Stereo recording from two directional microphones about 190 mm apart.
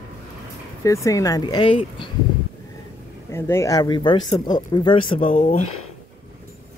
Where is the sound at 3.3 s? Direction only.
15° left (ahead or behind); by 5.6 s 30° left (ahead or behind).